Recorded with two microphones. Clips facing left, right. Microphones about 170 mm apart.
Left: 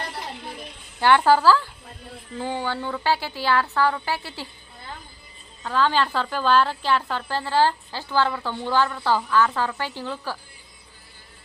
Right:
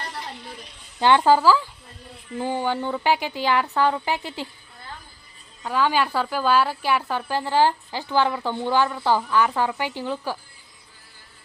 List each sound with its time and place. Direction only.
0.9 s a woman's voice: 20° right (ahead or behind)
5.6 s a woman's voice: 10° right (ahead or behind)